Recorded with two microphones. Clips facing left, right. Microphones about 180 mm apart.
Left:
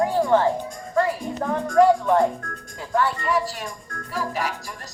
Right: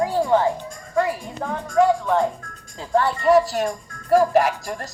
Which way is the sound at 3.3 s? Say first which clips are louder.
Right 8 dB; 45° right (ahead or behind).